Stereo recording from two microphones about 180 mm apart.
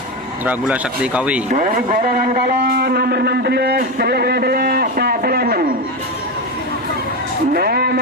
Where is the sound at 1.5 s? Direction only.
50° right (ahead or behind).